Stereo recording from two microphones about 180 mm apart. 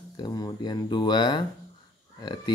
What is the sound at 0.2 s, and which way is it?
Speech, 25° left (ahead or behind).